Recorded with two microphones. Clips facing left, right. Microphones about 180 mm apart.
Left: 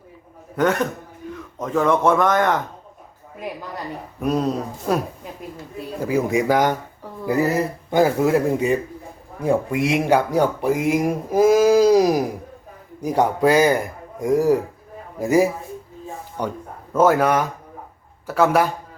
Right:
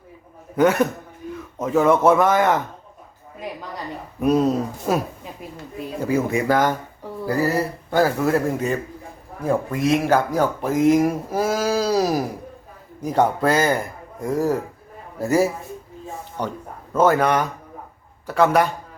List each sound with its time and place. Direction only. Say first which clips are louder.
0.5 s a man's voice: right 3 dB; 5° right (ahead or behind)
4.2 s speech: right 3 dB; centre (ahead or behind)